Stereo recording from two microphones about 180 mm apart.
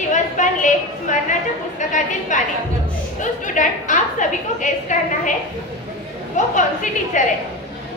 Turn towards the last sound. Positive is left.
turn(degrees=45)  # may be behind; listen again after turning